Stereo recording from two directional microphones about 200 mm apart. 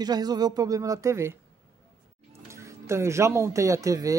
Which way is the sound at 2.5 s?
15° right (ahead or behind).